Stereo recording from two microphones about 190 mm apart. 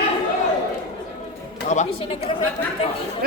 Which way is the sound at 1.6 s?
40° left (ahead or behind).